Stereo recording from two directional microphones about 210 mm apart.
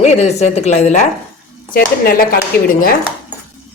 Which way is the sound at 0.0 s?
30° left (ahead or behind).